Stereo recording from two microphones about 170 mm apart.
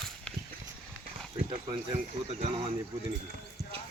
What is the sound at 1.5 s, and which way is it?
Speech, 35° right (ahead or behind).